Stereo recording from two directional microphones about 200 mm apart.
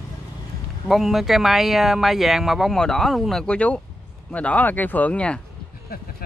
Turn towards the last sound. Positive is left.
turn(degrees=5)  # may be behind; listen again after turning